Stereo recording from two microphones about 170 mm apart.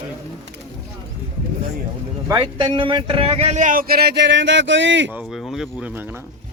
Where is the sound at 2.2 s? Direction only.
30° right (ahead or behind); by 5.1 s 90° right.